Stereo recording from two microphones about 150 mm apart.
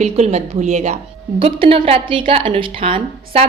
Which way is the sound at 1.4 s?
40° right (ahead or behind).